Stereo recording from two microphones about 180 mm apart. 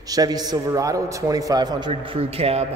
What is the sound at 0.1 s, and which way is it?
A man's voice, 20° right (ahead or behind).